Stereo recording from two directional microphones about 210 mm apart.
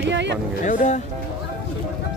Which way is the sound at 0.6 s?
35° left (ahead or behind).